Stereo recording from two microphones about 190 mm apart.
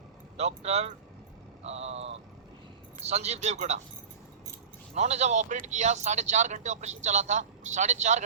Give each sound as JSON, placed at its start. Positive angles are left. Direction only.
{"t": 0.3, "sound": "speech", "side_deg": -35}
{"t": 4.9, "sound": "speech", "side_deg": -35}